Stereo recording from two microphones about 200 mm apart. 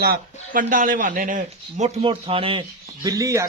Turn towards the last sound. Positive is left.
turn(degrees=-15)  # may be behind; listen again after turning